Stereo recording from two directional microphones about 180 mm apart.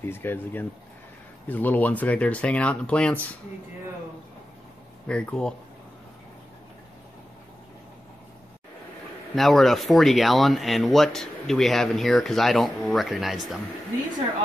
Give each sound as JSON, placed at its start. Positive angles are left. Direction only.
{"t": 0.0, "sound": "speech", "side_deg": 10}
{"t": 5.0, "sound": "speech", "side_deg": 5}
{"t": 9.3, "sound": "speech", "side_deg": 0}